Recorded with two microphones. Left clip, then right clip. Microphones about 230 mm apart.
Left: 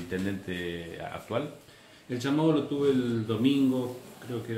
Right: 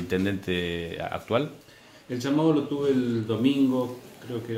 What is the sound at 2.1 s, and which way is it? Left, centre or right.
Speech, centre.